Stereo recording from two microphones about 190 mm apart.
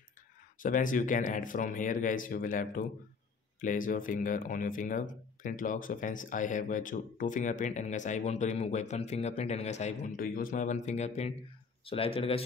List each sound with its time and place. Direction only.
0.6 s speech: 45° left (ahead or behind)